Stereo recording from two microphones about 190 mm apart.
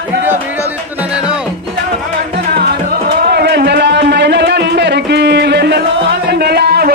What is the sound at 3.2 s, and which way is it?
Music, 60° right (ahead or behind).